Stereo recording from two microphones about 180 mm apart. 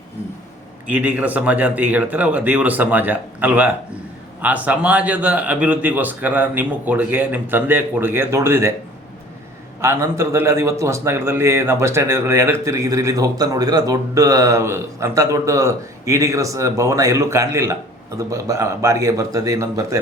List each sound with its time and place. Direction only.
0.9 s a man's voice: 10° right (ahead or behind)
9.8 s a man's voice: 15° right (ahead or behind)